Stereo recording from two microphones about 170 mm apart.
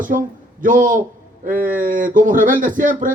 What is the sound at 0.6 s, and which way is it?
Speech, 50° right (ahead or behind).